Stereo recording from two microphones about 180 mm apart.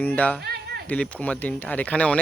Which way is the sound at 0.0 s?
5° left (ahead or behind).